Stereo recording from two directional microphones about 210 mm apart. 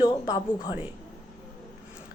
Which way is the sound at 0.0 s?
20° left (ahead or behind).